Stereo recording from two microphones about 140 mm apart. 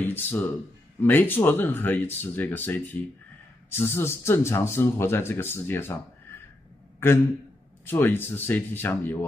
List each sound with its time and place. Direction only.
0.0 s speech: 15° left (ahead or behind)
7.0 s a man's voice: 15° left (ahead or behind)